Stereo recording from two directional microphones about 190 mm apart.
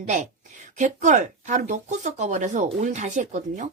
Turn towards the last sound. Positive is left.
turn(degrees=-40)  # may be behind; listen again after turning